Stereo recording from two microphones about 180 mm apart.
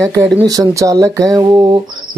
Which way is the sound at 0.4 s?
20° right (ahead or behind).